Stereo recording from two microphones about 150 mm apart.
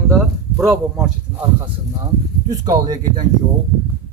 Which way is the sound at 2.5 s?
25° right (ahead or behind).